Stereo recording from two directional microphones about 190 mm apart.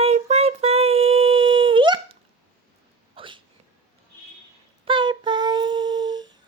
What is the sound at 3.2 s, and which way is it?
Hiccup, 25° right (ahead or behind).